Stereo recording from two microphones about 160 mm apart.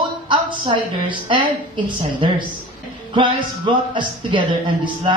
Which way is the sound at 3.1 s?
30° right (ahead or behind).